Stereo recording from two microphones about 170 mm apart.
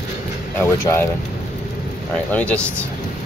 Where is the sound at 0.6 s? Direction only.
15° left (ahead or behind).